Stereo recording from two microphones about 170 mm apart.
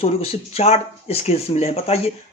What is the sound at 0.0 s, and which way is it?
Speech, 35° left (ahead or behind).